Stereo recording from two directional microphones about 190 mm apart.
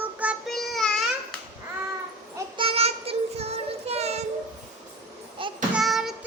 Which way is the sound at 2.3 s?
25° right (ahead or behind).